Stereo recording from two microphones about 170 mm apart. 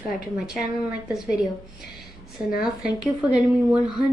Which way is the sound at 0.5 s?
5° right (ahead or behind).